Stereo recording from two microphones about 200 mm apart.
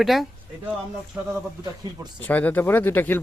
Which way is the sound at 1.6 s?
20° right (ahead or behind).